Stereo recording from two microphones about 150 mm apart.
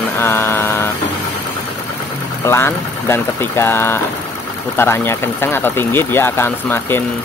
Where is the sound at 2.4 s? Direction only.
15° left (ahead or behind).